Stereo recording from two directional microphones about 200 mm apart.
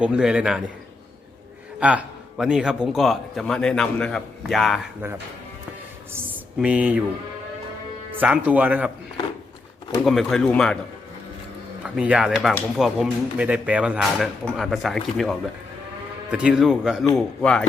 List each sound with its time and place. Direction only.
0.0 s speech: 5° right (ahead or behind)
1.8 s speech: 5° right (ahead or behind)
6.1 s speech: 5° right (ahead or behind)
8.2 s speech: 5° right (ahead or behind)
10.0 s speech: centre (ahead or behind)
11.9 s speech: 5° right (ahead or behind)